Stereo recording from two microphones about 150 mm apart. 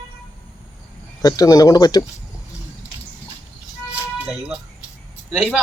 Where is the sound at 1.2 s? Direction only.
25° left (ahead or behind).